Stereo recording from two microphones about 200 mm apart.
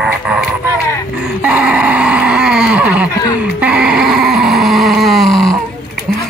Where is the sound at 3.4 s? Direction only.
5° right (ahead or behind).